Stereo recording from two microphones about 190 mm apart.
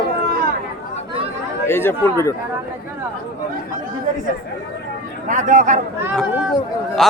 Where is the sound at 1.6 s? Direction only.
10° left (ahead or behind).